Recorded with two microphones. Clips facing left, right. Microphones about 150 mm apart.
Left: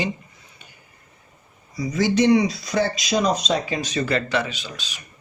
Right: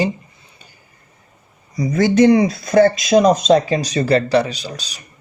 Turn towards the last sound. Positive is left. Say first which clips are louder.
# right 6 dB
turn(degrees=-35)  # may be behind; listen again after turning